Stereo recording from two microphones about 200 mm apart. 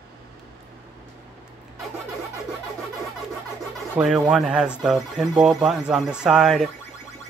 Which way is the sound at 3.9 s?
5° right (ahead or behind).